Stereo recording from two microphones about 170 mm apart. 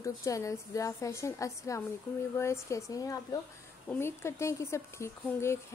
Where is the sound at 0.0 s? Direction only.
20° left (ahead or behind).